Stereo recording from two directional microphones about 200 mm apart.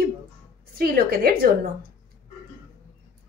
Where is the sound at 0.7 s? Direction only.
50° right (ahead or behind).